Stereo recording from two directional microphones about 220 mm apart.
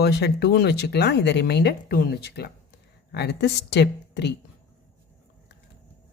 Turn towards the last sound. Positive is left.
turn(degrees=50)  # may be behind; listen again after turning